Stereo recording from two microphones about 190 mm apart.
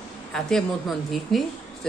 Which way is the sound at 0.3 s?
Centre (ahead or behind).